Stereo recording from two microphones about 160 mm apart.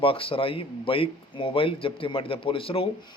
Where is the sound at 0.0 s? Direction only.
35° left (ahead or behind).